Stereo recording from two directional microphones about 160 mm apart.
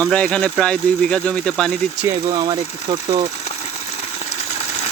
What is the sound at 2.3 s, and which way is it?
Speech, 30° right (ahead or behind).